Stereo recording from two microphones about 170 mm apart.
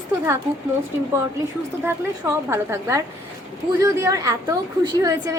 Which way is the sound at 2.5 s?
15° right (ahead or behind).